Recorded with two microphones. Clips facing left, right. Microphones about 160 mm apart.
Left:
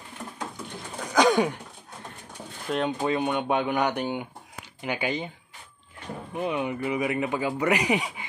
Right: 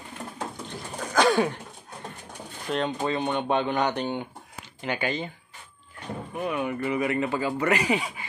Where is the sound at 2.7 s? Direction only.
10° left (ahead or behind).